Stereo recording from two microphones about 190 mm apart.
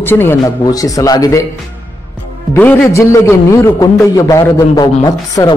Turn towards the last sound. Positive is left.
turn(degrees=20)  # may be behind; listen again after turning